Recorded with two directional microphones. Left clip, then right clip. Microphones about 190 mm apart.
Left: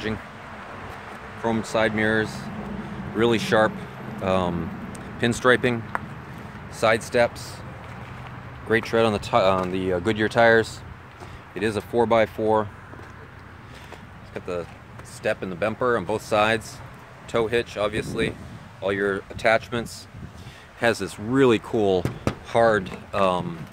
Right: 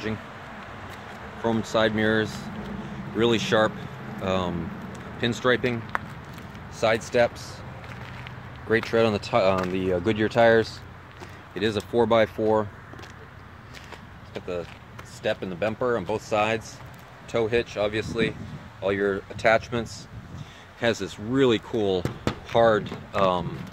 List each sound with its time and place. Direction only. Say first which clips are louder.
1.4 s speech: even; 20° right (ahead or behind)
3.2 s speech: left 2 dB; 5° right (ahead or behind)
6.8 s speech: left 2 dB; centre (ahead or behind)
8.6 s speech: left 1 dB; 5° right (ahead or behind)
15.2 s speech: left 2 dB; 10° right (ahead or behind)
16.3 s speech: left 4 dB; 10° left (ahead or behind)